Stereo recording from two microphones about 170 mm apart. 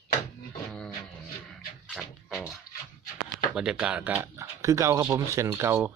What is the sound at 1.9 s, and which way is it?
Music, 5° right (ahead or behind).